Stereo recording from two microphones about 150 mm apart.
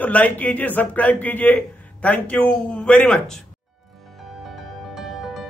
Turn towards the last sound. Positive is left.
turn(degrees=0)  # may be behind; listen again after turning